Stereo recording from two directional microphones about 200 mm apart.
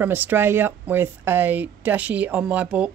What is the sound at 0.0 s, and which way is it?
Speech, 10° right (ahead or behind).